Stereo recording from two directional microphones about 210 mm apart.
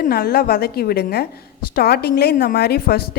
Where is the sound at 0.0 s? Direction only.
45° left (ahead or behind).